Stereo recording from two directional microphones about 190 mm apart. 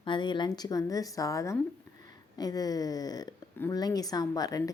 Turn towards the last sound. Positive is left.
turn(degrees=20)  # may be behind; listen again after turning